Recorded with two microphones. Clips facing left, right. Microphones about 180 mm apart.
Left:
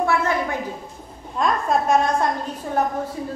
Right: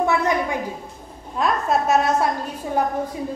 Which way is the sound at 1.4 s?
5° right (ahead or behind).